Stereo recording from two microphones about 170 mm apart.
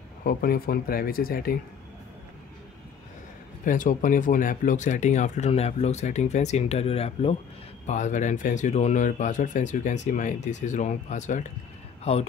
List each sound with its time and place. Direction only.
0.2 s speech: 60° left (ahead or behind)
3.6 s speech: 50° left (ahead or behind)